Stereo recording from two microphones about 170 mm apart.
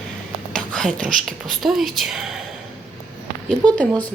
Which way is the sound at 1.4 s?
Centre (ahead or behind).